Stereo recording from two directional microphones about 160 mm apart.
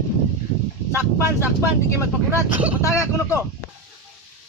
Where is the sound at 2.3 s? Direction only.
10° right (ahead or behind).